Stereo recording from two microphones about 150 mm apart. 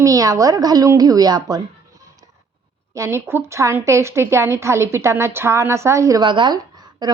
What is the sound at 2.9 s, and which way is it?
A woman's voice, 20° right (ahead or behind).